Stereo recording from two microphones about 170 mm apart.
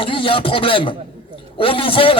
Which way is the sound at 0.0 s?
30° left (ahead or behind).